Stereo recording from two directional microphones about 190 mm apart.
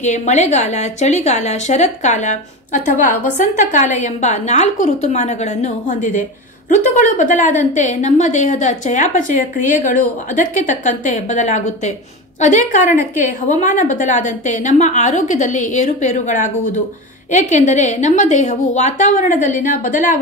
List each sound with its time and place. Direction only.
0.0 s a woman's voice: 40° left (ahead or behind)